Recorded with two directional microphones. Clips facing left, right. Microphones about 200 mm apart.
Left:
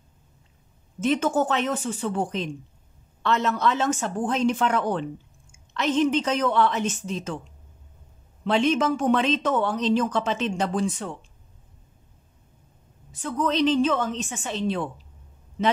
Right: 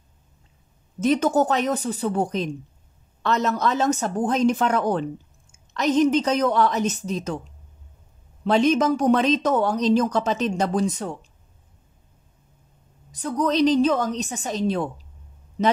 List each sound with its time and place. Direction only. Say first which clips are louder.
1.0 s speech: right 3 dB; 40° right (ahead or behind)
8.5 s speech: right 3 dB; 40° right (ahead or behind)
13.1 s speech: right 3 dB; 40° right (ahead or behind)